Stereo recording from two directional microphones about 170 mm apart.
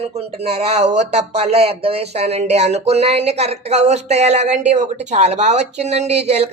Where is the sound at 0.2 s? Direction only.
35° right (ahead or behind).